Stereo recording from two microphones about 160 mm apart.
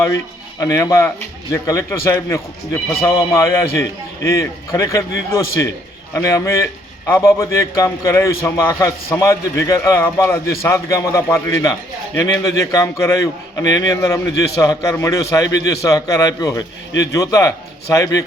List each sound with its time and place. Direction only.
0.6 s a man's voice: 20° left (ahead or behind)